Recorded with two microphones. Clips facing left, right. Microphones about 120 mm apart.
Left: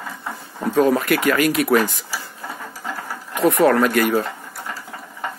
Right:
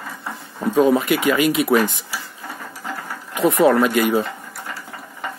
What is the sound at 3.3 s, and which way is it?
Speech, centre (ahead or behind).